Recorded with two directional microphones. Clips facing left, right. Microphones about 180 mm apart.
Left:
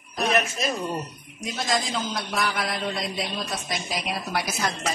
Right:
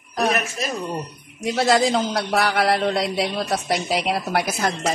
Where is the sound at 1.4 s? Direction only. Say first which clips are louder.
Right 9 dB; 75° right (ahead or behind).